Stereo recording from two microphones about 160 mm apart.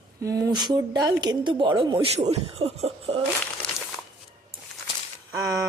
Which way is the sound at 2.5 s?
40° right (ahead or behind).